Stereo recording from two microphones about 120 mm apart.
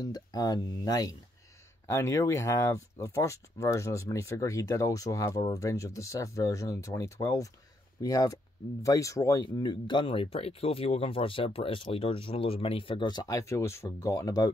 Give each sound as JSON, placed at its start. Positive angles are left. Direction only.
{"t": 0.0, "sound": "speech", "side_deg": 35}